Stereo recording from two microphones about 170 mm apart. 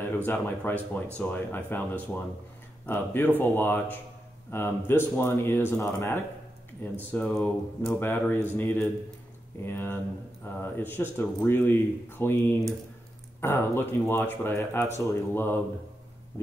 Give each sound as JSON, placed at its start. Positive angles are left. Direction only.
{"t": 0.0, "sound": "speech", "side_deg": 10}